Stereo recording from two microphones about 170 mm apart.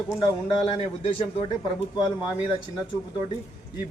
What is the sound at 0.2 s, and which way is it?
Speech, 30° left (ahead or behind).